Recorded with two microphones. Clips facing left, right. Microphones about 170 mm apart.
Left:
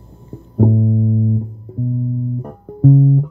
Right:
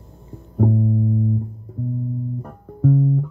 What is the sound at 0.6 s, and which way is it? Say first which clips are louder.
Music: left 4 dB; 25° left (ahead or behind).